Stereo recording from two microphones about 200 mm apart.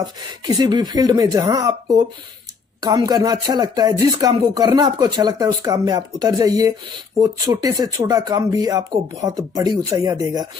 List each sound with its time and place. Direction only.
0.0 s speech: 20° right (ahead or behind)